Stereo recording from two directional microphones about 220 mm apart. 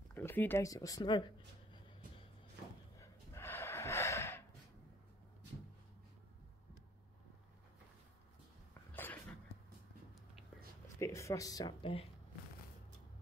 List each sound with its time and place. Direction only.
0.1 s speech: 10° left (ahead or behind)
3.0 s gasp: 10° left (ahead or behind)
8.9 s a sound: 10° left (ahead or behind)
11.0 s speech: 15° left (ahead or behind)